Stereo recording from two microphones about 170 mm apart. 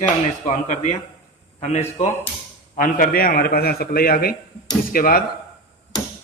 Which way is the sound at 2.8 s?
55° left (ahead or behind).